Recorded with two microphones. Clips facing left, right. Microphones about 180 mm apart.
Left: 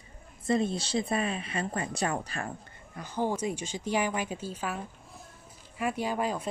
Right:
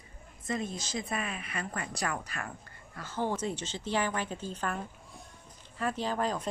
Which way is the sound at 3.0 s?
15° left (ahead or behind).